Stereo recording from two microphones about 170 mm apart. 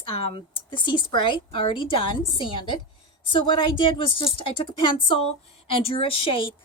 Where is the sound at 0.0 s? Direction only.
30° left (ahead or behind).